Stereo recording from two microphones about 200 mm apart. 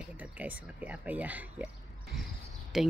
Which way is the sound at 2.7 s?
Centre (ahead or behind).